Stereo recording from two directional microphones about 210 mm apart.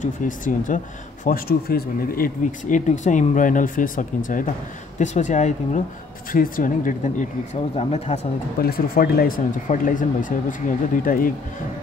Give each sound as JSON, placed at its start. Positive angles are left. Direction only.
{"t": 0.0, "sound": "speech", "side_deg": 40}
{"t": 8.5, "sound": "speech", "side_deg": 45}